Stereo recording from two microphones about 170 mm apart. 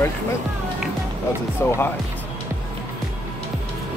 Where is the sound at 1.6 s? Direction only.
15° left (ahead or behind).